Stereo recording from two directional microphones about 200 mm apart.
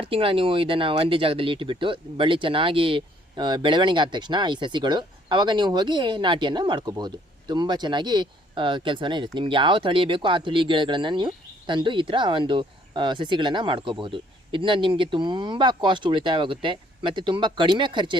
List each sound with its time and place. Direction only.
0.0 s speech: 25° right (ahead or behind)